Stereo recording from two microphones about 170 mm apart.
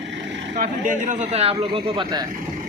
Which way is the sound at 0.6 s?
50° right (ahead or behind).